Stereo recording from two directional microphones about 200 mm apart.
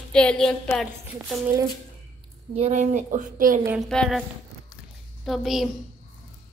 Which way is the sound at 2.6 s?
35° right (ahead or behind).